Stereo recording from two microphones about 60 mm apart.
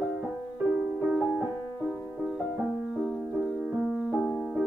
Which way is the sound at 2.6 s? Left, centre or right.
Centre.